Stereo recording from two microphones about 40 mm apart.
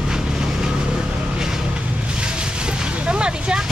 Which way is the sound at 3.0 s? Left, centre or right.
Right.